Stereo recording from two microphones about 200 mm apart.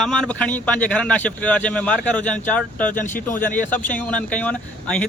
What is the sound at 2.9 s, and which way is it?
Speech, 40° left (ahead or behind).